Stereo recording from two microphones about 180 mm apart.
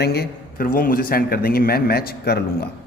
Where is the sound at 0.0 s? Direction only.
60° left (ahead or behind).